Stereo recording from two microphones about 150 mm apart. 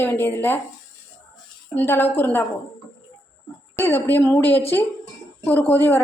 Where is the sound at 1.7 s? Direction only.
15° left (ahead or behind).